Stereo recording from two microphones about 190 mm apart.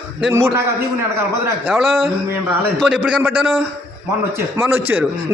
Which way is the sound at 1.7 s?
Centre (ahead or behind).